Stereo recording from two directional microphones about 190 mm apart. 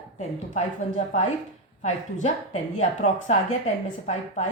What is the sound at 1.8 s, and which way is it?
A woman's voice, 40° left (ahead or behind).